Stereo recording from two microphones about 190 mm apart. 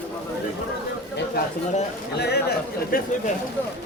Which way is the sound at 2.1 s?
60° left (ahead or behind).